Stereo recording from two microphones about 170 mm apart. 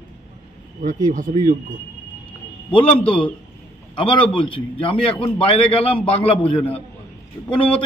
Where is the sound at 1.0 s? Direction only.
50° right (ahead or behind).